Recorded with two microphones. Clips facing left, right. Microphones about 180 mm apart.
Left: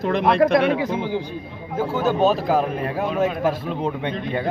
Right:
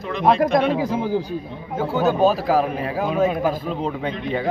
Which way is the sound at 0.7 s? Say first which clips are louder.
Right 1 dB; 35° right (ahead or behind).